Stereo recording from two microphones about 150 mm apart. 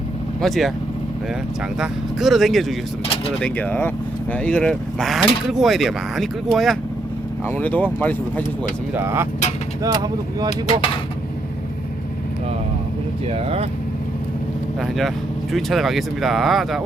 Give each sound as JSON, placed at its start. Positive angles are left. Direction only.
{"t": 0.4, "sound": "speech", "side_deg": 0}
{"t": 1.8, "sound": "speech", "side_deg": 0}
{"t": 7.4, "sound": "speech", "side_deg": 10}
{"t": 9.0, "sound": "speech", "side_deg": -15}
{"t": 13.2, "sound": "speech", "side_deg": -40}
{"t": 14.8, "sound": "speech", "side_deg": 0}